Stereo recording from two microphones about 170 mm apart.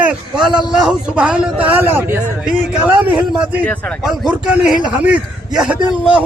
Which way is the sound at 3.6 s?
10° left (ahead or behind).